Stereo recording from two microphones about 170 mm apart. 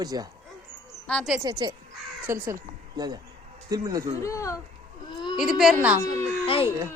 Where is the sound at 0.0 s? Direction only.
20° right (ahead or behind).